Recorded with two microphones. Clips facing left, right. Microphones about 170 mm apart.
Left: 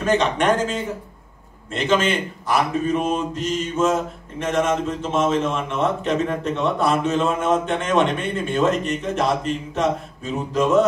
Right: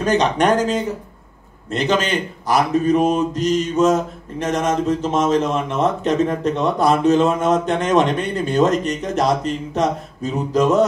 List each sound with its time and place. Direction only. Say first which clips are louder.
0.0 s a man's voice: right 2 dB; 35° right (ahead or behind)